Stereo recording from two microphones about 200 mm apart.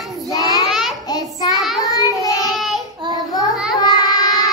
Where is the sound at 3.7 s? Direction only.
20° left (ahead or behind).